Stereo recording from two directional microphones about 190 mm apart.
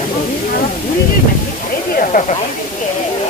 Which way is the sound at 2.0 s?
40° left (ahead or behind).